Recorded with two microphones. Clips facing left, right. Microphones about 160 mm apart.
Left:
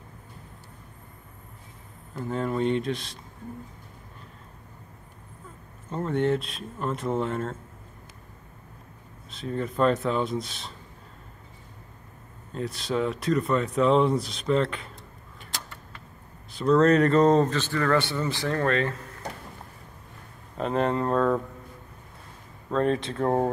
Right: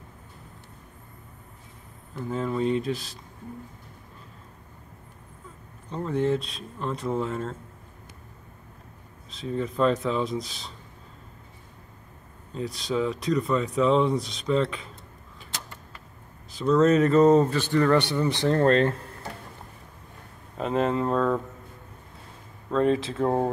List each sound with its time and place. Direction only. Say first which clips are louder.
2.2 s speech: even; centre (ahead or behind)
5.9 s speech: even; centre (ahead or behind)
9.3 s speech: right 1 dB; centre (ahead or behind)
12.5 s speech: even; centre (ahead or behind)
16.5 s speech: even; centre (ahead or behind); by 18.9 s 30° right (ahead or behind)
20.5 s speech: even; 5° right (ahead or behind)
22.7 s speech: right 2 dB; centre (ahead or behind)